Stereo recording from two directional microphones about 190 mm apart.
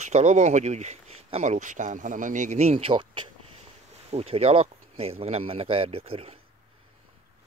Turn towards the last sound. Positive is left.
turn(degrees=-30)  # may be behind; listen again after turning